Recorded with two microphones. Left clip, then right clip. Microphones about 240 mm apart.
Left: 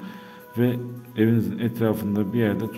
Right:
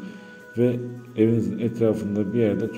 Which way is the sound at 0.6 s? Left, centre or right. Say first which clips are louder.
Right 2 dB; left.